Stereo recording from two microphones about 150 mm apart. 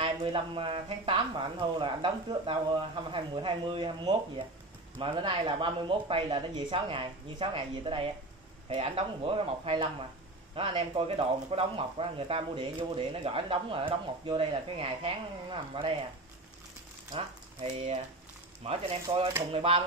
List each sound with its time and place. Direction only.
0.0 s speech: 35° right (ahead or behind)
17.6 s speech: 45° right (ahead or behind)